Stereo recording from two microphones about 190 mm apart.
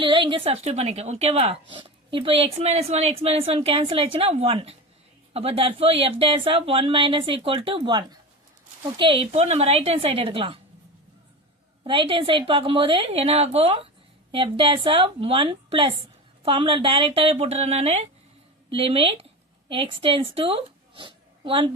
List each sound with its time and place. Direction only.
0.0 s a woman's voice: 25° right (ahead or behind)
11.8 s speech: 25° right (ahead or behind)